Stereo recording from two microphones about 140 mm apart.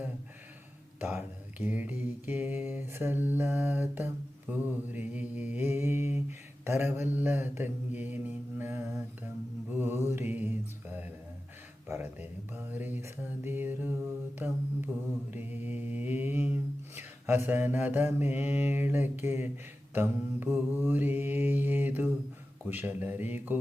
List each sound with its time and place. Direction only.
0.9 s mantra: 15° right (ahead or behind)